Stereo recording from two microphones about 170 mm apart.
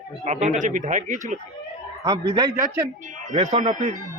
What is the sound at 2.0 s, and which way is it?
Speech, 25° right (ahead or behind).